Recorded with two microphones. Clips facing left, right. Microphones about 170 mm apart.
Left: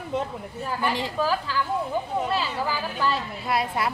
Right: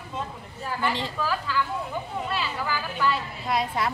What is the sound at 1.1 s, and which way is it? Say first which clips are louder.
Speech: left 3 dB; 30° left (ahead or behind).